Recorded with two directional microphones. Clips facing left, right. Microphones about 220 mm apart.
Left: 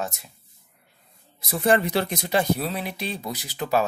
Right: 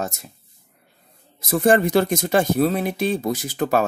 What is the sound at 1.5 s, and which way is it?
Speech, 50° right (ahead or behind).